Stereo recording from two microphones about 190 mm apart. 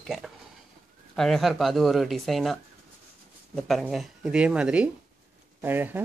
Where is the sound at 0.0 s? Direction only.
Centre (ahead or behind).